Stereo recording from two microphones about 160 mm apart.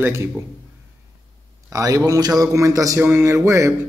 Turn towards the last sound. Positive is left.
turn(degrees=-20)  # may be behind; listen again after turning